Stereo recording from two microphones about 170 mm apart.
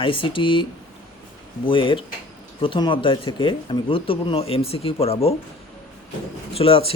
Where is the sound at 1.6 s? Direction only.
30° left (ahead or behind).